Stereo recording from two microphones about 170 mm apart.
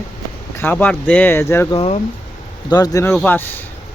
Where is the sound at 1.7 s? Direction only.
35° left (ahead or behind).